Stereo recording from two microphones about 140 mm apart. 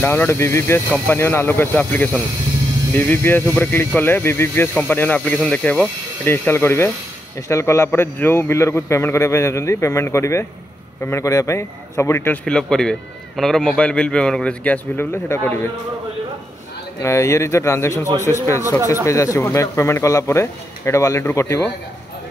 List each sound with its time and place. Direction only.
0.0 s a man's voice: 15° left (ahead or behind)
12.4 s speech: 5° left (ahead or behind)
17.0 s a man's voice: 20° left (ahead or behind)